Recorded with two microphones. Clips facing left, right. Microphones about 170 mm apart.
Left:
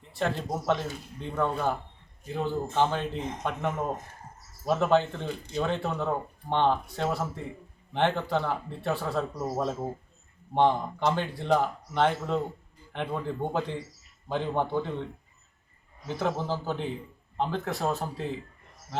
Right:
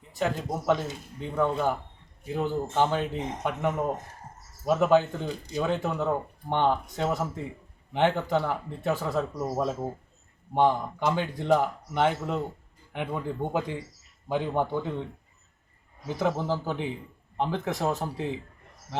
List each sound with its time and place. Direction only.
0.2 s speech: 10° right (ahead or behind)
9.4 s speech: 5° right (ahead or behind)
16.0 s speech: 15° right (ahead or behind)